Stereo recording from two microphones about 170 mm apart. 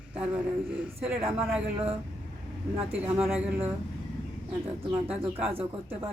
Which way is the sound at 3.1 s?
5° right (ahead or behind).